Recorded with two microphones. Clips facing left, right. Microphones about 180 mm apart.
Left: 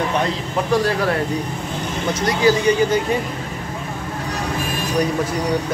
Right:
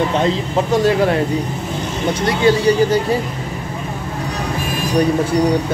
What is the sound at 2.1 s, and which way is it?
Speech, 25° right (ahead or behind).